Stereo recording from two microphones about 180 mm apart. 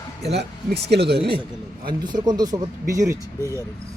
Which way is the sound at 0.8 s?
65° right (ahead or behind).